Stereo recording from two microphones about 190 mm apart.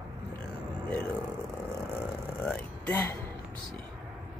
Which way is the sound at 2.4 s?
5° left (ahead or behind).